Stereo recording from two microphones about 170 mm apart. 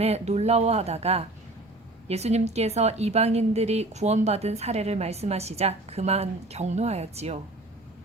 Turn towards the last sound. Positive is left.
turn(degrees=-40)  # may be behind; listen again after turning